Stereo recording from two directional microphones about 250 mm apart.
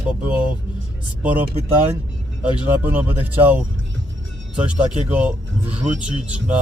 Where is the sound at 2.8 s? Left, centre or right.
Centre.